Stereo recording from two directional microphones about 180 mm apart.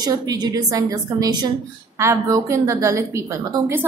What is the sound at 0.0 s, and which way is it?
A woman's voice, 20° right (ahead or behind).